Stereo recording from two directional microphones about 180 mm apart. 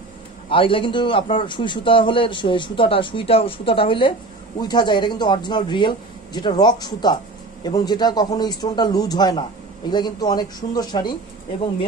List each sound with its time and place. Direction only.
0.5 s a man's voice: 30° left (ahead or behind)